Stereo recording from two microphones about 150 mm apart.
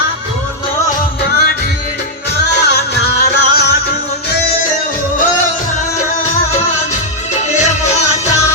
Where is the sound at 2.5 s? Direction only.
90° left.